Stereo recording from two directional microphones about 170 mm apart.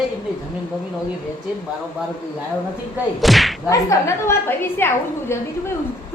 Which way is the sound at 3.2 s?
Centre (ahead or behind).